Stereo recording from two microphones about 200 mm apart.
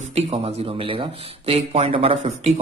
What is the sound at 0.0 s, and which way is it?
Speech, 30° right (ahead or behind).